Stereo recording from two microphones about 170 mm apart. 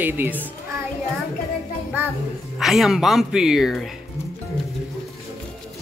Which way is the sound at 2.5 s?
Centre (ahead or behind).